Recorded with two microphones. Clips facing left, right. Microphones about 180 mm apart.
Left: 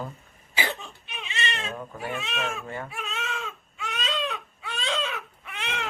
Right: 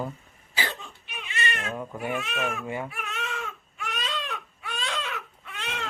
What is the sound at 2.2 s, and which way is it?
Speech, 25° left (ahead or behind).